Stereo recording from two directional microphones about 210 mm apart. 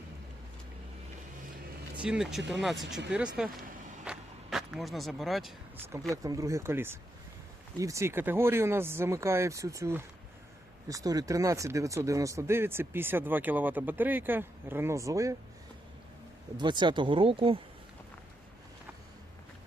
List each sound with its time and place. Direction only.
2.0 s speech: 5° right (ahead or behind)
4.0 s vehicle: 5° right (ahead or behind)
6.2 s speech: 15° right (ahead or behind)
16.6 s speech: 20° right (ahead or behind)